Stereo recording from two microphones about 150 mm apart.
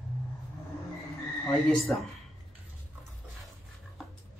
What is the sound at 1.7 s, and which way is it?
Speech, centre (ahead or behind).